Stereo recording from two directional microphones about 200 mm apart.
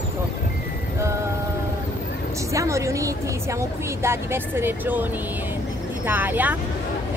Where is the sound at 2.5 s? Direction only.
15° right (ahead or behind).